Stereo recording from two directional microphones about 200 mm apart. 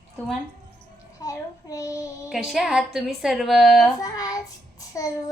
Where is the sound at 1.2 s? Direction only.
15° left (ahead or behind).